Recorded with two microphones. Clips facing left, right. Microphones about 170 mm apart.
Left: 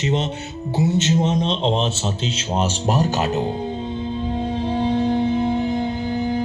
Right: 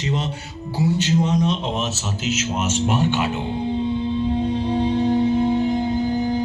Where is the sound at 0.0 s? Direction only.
25° left (ahead or behind); by 3.4 s 40° left (ahead or behind).